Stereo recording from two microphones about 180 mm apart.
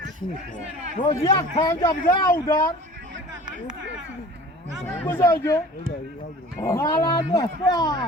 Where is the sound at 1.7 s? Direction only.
15° left (ahead or behind).